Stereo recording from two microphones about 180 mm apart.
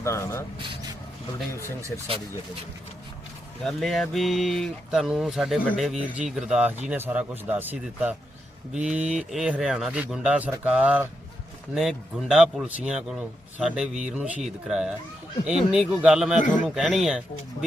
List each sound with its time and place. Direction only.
0.0 s speech: 15° left (ahead or behind)
3.6 s speech: 5° left (ahead or behind)